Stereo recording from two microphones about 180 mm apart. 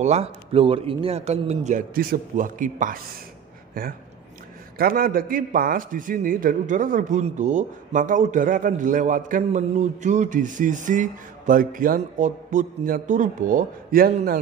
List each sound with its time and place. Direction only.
0.0 s a man's voice: 35° right (ahead or behind)
4.7 s a man's voice: 55° right (ahead or behind)